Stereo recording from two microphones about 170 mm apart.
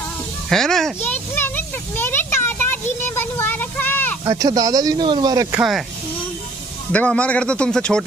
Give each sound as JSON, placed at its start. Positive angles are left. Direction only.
{"t": 0.5, "sound": "a child's voice", "side_deg": 0}
{"t": 2.0, "sound": "a sound", "side_deg": 15}
{"t": 4.2, "sound": "speech", "side_deg": -20}
{"t": 5.6, "sound": "speech", "side_deg": 0}
{"t": 6.9, "sound": "a man's voice", "side_deg": 5}